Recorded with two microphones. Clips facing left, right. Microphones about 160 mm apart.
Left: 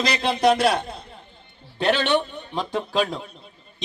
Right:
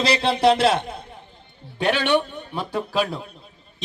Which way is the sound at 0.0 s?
30° right (ahead or behind).